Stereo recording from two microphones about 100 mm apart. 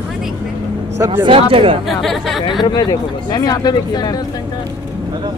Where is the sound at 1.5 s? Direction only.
65° right (ahead or behind).